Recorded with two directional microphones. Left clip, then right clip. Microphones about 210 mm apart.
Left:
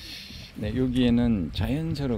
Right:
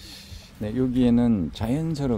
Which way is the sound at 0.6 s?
5° right (ahead or behind).